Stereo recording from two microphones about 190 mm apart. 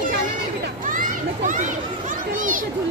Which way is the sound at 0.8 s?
45° right (ahead or behind).